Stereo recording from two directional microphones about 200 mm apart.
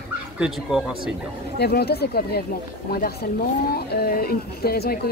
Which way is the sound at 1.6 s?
50° left (ahead or behind).